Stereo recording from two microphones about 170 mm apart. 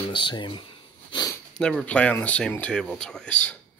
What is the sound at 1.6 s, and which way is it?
Speech, 5° left (ahead or behind).